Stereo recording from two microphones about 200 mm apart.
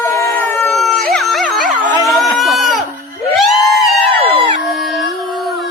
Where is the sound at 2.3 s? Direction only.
Centre (ahead or behind).